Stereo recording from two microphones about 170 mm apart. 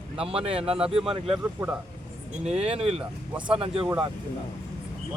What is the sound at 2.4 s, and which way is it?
Speech, 35° right (ahead or behind).